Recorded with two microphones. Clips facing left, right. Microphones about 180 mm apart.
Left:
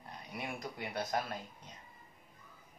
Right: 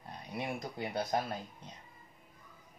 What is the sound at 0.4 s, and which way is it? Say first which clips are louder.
Speech: right 4 dB; 30° right (ahead or behind).